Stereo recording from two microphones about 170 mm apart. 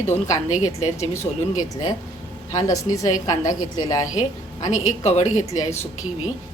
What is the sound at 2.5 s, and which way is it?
A woman's voice, 20° left (ahead or behind).